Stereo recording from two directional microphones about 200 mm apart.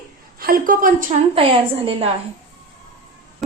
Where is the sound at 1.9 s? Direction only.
30° right (ahead or behind).